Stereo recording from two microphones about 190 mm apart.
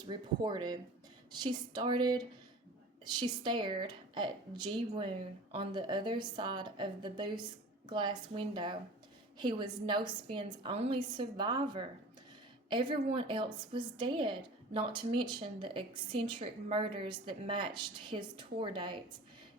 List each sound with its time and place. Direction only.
0.1 s a woman's voice: 20° right (ahead or behind)